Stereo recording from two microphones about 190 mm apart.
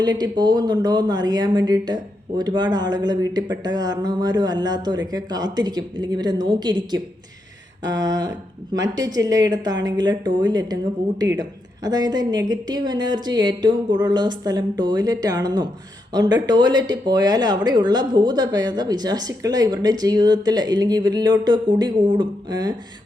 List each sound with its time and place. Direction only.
0.0 s speech: 20° right (ahead or behind)